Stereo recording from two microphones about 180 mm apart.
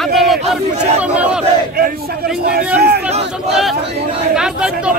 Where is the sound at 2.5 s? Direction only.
60° right (ahead or behind).